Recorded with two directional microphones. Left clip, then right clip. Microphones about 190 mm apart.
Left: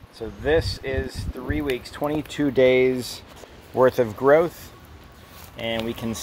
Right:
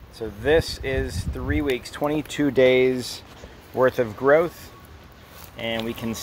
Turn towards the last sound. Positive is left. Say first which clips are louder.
# left 1 dB
turn(degrees=15)  # may be behind; listen again after turning